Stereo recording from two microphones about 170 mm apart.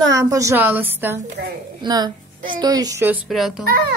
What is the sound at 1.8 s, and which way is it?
A woman's voice, 25° right (ahead or behind).